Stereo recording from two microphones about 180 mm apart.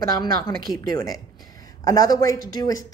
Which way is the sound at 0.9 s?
20° left (ahead or behind).